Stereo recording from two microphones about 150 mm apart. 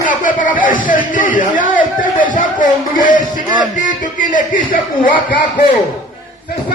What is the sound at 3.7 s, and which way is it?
Speech, 60° left (ahead or behind).